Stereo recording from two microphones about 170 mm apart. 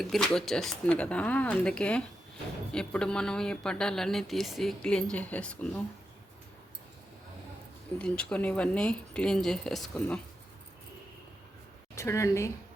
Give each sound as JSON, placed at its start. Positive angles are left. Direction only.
{"t": 0.0, "sound": "a woman's voice", "side_deg": 0}
{"t": 7.9, "sound": "a woman's voice", "side_deg": 5}
{"t": 11.9, "sound": "speech", "side_deg": 15}